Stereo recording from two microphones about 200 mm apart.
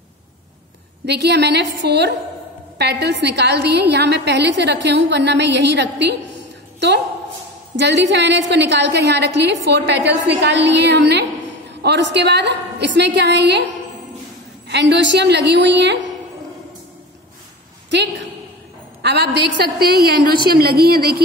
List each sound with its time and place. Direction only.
1.0 s a woman's voice: 55° right (ahead or behind)
7.7 s a woman's voice: 60° right (ahead or behind)
17.8 s a woman's voice: 60° right (ahead or behind)